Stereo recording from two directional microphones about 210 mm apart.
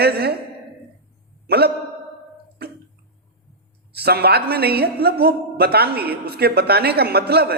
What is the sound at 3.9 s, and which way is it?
Speech, 50° right (ahead or behind).